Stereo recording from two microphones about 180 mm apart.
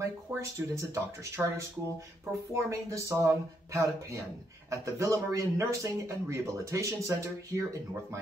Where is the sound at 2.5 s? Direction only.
15° right (ahead or behind).